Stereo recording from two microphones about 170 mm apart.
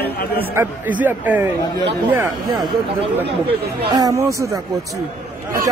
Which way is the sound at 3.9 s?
20° right (ahead or behind).